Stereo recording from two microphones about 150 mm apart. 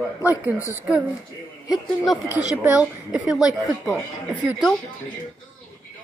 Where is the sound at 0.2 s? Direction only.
20° left (ahead or behind).